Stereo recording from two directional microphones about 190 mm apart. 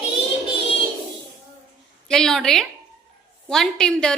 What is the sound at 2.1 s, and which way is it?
A woman's voice, 5° left (ahead or behind).